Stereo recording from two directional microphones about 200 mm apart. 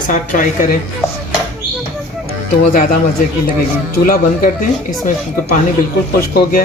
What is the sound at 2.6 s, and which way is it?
Speech, 45° left (ahead or behind).